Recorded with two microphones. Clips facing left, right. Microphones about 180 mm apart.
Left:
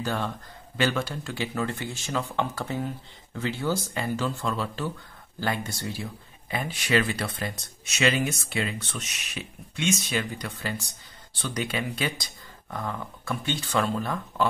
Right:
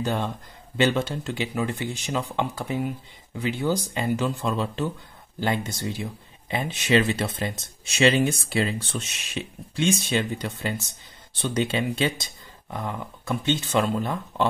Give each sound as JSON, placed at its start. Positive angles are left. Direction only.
{"t": 0.0, "sound": "speech", "side_deg": -20}